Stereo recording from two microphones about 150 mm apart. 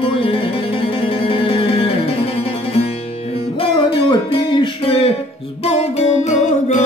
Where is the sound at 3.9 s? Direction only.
35° left (ahead or behind).